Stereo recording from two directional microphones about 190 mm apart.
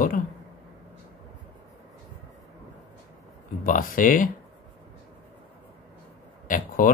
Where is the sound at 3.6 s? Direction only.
45° left (ahead or behind).